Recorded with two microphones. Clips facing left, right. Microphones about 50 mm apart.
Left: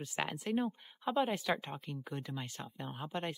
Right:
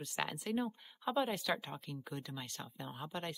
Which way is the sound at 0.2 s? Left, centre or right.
Centre.